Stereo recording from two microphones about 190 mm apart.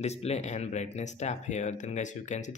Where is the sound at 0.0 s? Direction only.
35° left (ahead or behind).